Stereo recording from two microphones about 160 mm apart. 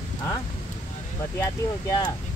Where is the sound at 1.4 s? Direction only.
20° left (ahead or behind).